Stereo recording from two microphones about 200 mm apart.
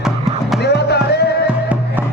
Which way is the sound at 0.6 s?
55° left (ahead or behind).